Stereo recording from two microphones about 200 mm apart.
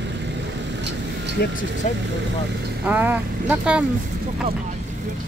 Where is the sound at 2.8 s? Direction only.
10° right (ahead or behind).